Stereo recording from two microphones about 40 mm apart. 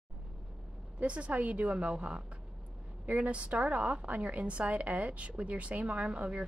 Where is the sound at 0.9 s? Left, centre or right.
Right.